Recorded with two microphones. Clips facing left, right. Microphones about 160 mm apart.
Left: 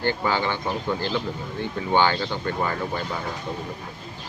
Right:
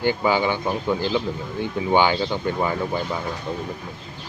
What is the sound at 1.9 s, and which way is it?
Speech, 15° right (ahead or behind).